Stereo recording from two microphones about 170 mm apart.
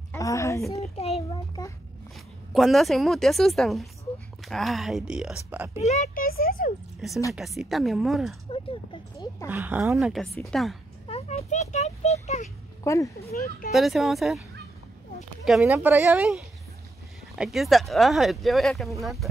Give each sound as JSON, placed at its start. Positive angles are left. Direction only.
{"t": 0.1, "sound": "a sound", "side_deg": 20}
{"t": 0.7, "sound": "a child's voice", "side_deg": 40}
{"t": 1.3, "sound": "a child's voice", "side_deg": 25}
{"t": 2.1, "sound": "speech", "side_deg": 0}
{"t": 5.8, "sound": "a child's voice", "side_deg": 40}
{"t": 7.0, "sound": "speech", "side_deg": -5}
{"t": 8.5, "sound": "speech", "side_deg": 30}
{"t": 9.5, "sound": "speech", "side_deg": -10}
{"t": 9.9, "sound": "speech", "side_deg": 0}
{"t": 11.1, "sound": "a sound", "side_deg": 35}
{"t": 12.8, "sound": "speech", "side_deg": 15}
{"t": 13.3, "sound": "a child's voice", "side_deg": 60}
{"t": 13.7, "sound": "speech", "side_deg": 0}
{"t": 15.4, "sound": "speech", "side_deg": -5}